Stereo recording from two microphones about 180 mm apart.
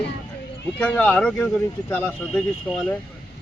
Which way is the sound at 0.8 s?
10° left (ahead or behind).